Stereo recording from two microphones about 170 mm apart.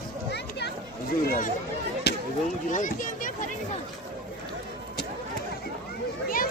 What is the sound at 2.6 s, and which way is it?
Speech, 50° left (ahead or behind).